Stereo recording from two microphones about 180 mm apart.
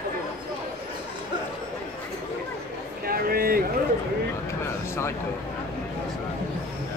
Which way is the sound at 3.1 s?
55° right (ahead or behind).